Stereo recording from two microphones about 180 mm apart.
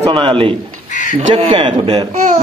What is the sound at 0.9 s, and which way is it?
Crow, 45° left (ahead or behind).